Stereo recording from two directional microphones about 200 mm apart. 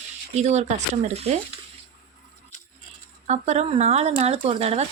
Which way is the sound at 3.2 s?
35° right (ahead or behind).